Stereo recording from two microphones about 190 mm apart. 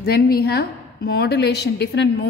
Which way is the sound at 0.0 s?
55° left (ahead or behind).